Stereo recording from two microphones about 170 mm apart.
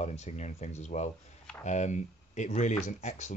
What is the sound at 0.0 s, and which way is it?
Speech, 40° left (ahead or behind).